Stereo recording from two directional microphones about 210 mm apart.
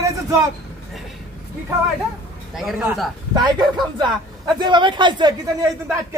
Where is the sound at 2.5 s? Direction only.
Centre (ahead or behind).